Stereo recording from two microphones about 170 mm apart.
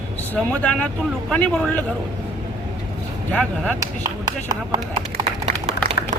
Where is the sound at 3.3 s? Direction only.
5° left (ahead or behind).